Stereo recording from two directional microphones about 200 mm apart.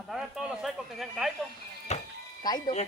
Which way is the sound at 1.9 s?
35° left (ahead or behind).